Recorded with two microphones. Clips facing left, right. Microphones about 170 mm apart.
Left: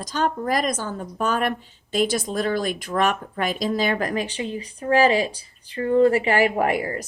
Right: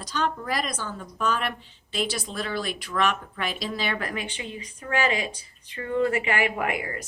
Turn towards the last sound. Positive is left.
turn(degrees=35)  # may be behind; listen again after turning